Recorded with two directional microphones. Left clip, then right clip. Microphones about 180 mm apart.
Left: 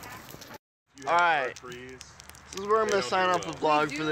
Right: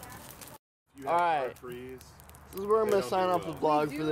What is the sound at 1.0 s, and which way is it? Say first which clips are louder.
Speech: left 3 dB; 5° left (ahead or behind).